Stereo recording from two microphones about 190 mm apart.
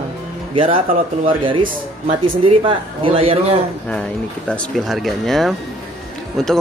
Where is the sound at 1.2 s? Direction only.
25° right (ahead or behind).